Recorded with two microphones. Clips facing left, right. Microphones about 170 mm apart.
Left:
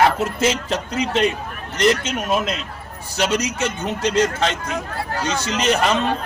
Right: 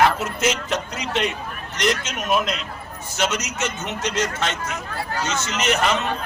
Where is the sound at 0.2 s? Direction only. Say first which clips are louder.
Left 3 dB; 30° left (ahead or behind).